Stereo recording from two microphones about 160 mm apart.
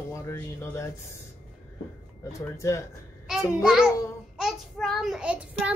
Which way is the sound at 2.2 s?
20° left (ahead or behind).